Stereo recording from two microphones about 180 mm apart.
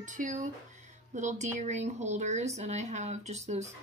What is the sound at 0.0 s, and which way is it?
Speech, 45° right (ahead or behind).